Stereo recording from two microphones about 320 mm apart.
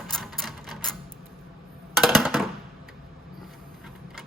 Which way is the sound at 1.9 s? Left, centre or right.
Centre.